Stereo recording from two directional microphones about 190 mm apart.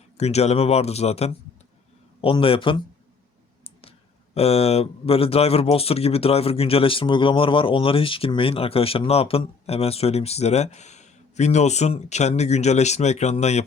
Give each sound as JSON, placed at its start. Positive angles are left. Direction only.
{"t": 0.2, "sound": "speech", "side_deg": 35}
{"t": 3.6, "sound": "clicking", "side_deg": 30}
{"t": 4.4, "sound": "speech", "side_deg": 30}